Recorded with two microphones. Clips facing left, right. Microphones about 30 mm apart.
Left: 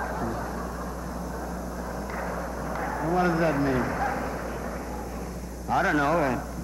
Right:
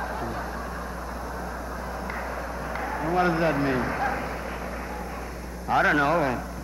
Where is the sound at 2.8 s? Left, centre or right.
Right.